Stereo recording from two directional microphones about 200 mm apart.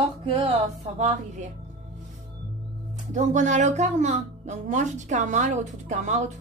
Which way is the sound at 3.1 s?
35° right (ahead or behind).